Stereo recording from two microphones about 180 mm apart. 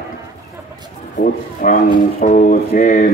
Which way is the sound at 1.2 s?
50° left (ahead or behind).